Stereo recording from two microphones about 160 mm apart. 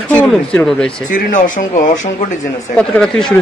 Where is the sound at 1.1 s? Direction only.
55° left (ahead or behind).